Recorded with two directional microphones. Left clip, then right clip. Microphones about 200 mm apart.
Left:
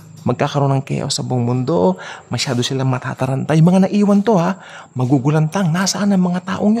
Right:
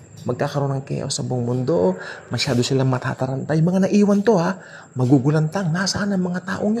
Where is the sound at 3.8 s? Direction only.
10° left (ahead or behind).